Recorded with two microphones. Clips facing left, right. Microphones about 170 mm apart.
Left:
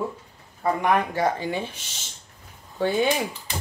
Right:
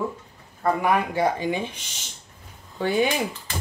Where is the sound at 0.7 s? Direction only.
5° right (ahead or behind).